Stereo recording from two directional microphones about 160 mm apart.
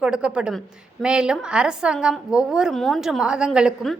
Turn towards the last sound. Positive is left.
turn(degrees=0)  # may be behind; listen again after turning